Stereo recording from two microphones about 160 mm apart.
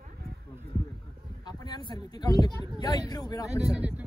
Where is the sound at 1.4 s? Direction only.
25° left (ahead or behind).